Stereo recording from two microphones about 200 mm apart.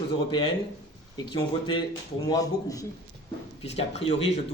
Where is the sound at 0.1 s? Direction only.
25° left (ahead or behind).